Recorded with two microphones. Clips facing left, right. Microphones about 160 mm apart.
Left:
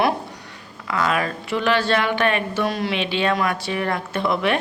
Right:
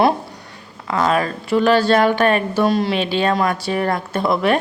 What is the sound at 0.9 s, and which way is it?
Speech, 35° right (ahead or behind).